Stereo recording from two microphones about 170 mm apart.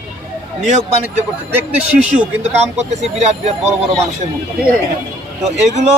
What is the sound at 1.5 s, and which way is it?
Speech, 10° right (ahead or behind).